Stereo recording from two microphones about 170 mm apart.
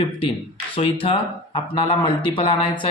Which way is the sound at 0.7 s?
35° left (ahead or behind).